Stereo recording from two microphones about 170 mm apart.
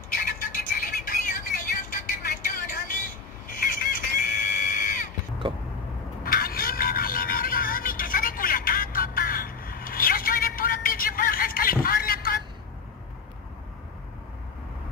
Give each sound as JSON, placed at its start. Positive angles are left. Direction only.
{"t": 0.1, "sound": "music", "side_deg": 55}
{"t": 3.4, "sound": "a sound", "side_deg": 55}
{"t": 5.5, "sound": "vehicle", "side_deg": -30}
{"t": 6.2, "sound": "music", "side_deg": 60}